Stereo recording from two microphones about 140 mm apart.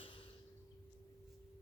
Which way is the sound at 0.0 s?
35° left (ahead or behind).